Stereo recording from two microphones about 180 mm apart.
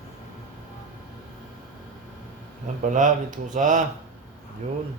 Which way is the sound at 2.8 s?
45° right (ahead or behind).